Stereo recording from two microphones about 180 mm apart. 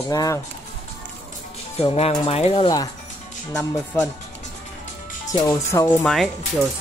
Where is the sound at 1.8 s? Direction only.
35° left (ahead or behind).